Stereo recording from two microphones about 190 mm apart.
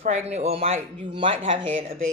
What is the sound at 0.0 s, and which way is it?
A woman's voice, 35° right (ahead or behind).